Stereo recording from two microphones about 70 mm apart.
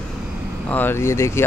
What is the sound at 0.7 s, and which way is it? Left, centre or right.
Speech, left.